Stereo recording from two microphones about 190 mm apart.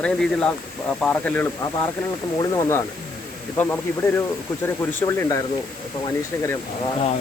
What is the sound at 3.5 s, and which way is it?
Speech, 10° left (ahead or behind).